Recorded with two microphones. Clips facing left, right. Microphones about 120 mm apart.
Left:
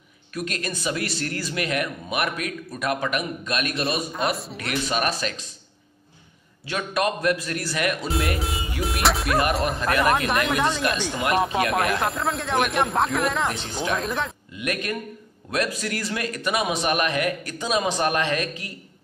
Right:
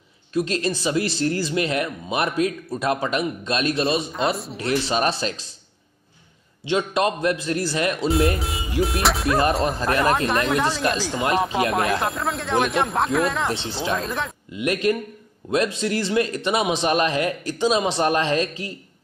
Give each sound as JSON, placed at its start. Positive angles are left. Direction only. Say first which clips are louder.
{"t": 0.3, "sound": "speech", "louder": "right 7 dB", "side_deg": -25}
{"t": 6.6, "sound": "speech", "louder": "right 4 dB", "side_deg": -25}
{"t": 8.1, "sound": "speech", "louder": "right 5 dB", "side_deg": 0}
{"t": 9.4, "sound": "speech", "louder": "right 2 dB", "side_deg": -30}
{"t": 10.1, "sound": "speech", "louder": "right 2 dB", "side_deg": 0}
{"t": 13.5, "sound": "speech", "louder": "right 3 dB", "side_deg": -30}
{"t": 13.9, "sound": "speech", "louder": "even", "side_deg": 0}
{"t": 14.5, "sound": "speech", "louder": "right 11 dB", "side_deg": -25}